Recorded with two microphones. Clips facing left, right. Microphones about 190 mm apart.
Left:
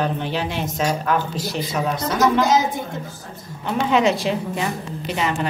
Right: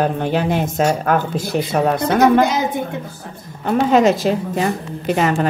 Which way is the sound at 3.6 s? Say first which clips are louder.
Right 5 dB; 45° right (ahead or behind).